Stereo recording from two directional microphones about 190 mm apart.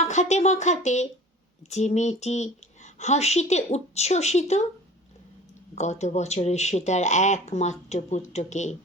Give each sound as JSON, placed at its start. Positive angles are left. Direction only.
{"t": 0.0, "sound": "speech", "side_deg": 40}
{"t": 5.7, "sound": "speech", "side_deg": 35}